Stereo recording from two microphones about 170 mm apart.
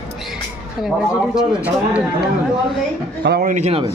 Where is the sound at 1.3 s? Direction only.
5° right (ahead or behind).